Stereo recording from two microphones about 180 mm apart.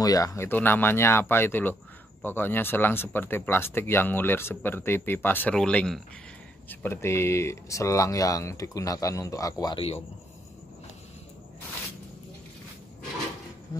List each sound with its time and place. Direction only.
0.0 s speech: 20° left (ahead or behind)